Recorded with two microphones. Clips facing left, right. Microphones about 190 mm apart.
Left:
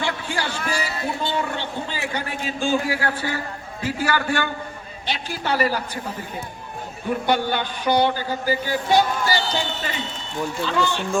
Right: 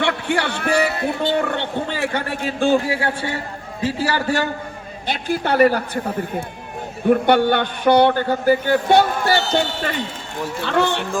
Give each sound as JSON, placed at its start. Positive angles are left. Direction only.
{"t": 0.0, "sound": "speech", "side_deg": -65}
{"t": 2.8, "sound": "a man's voice", "side_deg": -25}
{"t": 5.0, "sound": "a man's voice", "side_deg": -50}